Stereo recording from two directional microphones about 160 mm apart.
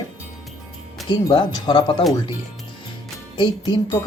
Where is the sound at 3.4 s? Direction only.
25° left (ahead or behind).